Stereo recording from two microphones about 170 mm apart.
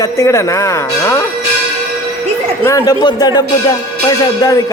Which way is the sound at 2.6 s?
20° left (ahead or behind).